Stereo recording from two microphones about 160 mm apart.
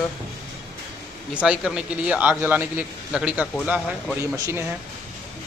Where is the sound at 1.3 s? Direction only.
5° right (ahead or behind).